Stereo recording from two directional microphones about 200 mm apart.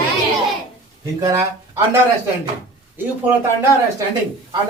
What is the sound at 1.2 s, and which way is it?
Speech, 15° right (ahead or behind).